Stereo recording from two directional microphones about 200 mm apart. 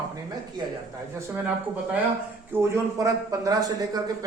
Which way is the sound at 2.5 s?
15° right (ahead or behind).